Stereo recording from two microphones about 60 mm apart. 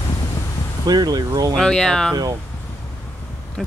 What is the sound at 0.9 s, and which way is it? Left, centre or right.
Speech, right.